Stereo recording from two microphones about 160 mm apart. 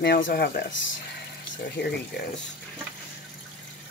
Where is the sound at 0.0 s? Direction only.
85° left.